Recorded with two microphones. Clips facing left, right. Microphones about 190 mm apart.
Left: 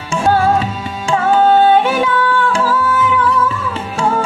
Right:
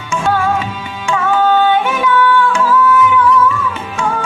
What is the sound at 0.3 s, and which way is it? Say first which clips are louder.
Music: left 3 dB; 35° left (ahead or behind).